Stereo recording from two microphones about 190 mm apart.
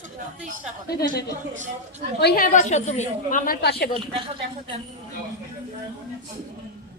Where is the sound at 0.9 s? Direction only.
55° left (ahead or behind).